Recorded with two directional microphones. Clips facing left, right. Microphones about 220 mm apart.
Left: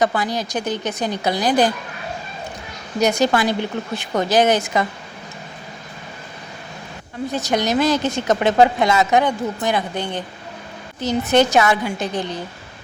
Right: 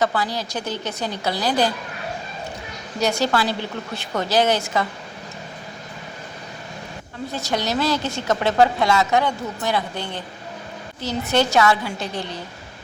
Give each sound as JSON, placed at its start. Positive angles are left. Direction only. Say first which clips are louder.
{"t": 0.0, "sound": "a woman's voice", "louder": "left 3 dB", "side_deg": 15}
{"t": 3.0, "sound": "a woman's voice", "louder": "left 4 dB", "side_deg": 20}
{"t": 7.3, "sound": "a woman's voice", "louder": "left 4 dB", "side_deg": 20}